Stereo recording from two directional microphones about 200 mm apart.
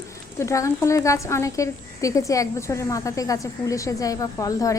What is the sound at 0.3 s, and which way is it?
Speech, 15° left (ahead or behind).